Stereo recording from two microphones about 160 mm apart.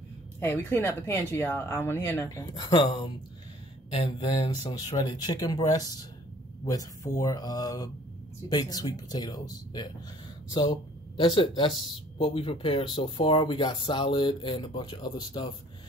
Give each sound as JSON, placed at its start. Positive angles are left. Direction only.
{"t": 0.4, "sound": "speech", "side_deg": 15}
{"t": 2.5, "sound": "speech", "side_deg": 30}